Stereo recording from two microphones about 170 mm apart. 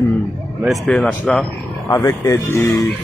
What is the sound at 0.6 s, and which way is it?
Speech, 5° left (ahead or behind).